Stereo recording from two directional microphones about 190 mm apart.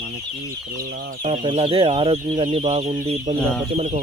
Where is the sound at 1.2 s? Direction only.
35° right (ahead or behind).